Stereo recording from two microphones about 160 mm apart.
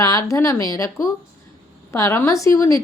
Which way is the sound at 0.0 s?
20° left (ahead or behind).